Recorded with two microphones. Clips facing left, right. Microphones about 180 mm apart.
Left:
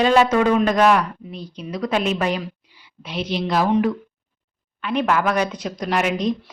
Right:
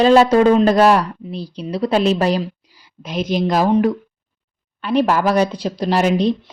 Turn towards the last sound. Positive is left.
turn(degrees=-30)  # may be behind; listen again after turning